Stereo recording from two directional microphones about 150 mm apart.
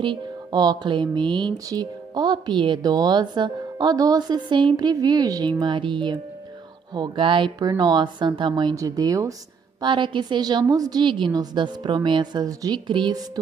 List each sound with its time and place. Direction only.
0.0 s music: 30° right (ahead or behind)
9.8 s a woman's voice: 30° right (ahead or behind)